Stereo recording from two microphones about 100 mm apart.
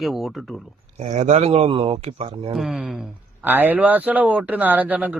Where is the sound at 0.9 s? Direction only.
90° right.